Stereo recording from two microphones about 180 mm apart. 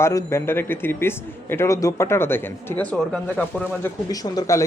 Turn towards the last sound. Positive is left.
turn(degrees=20)  # may be behind; listen again after turning